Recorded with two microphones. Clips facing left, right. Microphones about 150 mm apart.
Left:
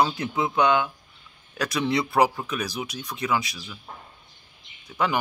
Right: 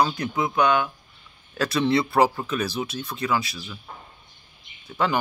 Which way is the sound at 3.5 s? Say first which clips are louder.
Right 3 dB; 5° right (ahead or behind).